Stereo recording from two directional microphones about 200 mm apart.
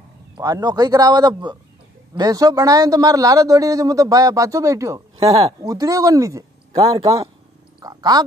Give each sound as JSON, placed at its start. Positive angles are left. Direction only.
{"t": 0.4, "sound": "a man's voice", "side_deg": -20}
{"t": 5.1, "sound": "speech", "side_deg": -30}
{"t": 5.6, "sound": "a man's voice", "side_deg": -15}